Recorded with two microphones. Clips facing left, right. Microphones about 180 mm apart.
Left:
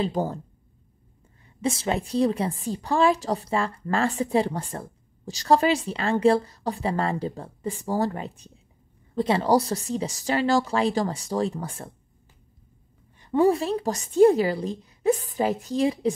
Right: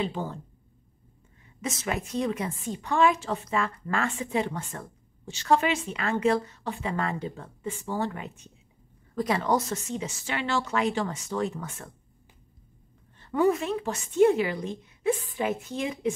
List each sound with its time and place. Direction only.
0.0 s a woman's voice: 40° left (ahead or behind)
1.6 s a woman's voice: 30° left (ahead or behind)
13.3 s a woman's voice: 30° left (ahead or behind)